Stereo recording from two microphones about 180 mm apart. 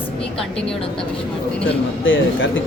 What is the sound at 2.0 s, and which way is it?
Speech, 90° left.